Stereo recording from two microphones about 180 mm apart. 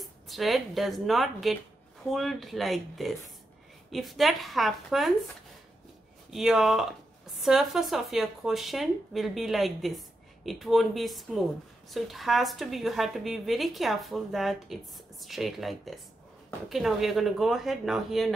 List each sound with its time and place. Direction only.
0.0 s speech: centre (ahead or behind)
6.3 s speech: centre (ahead or behind)